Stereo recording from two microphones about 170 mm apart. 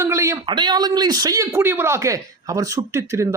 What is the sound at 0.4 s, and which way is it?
Speech, 25° right (ahead or behind).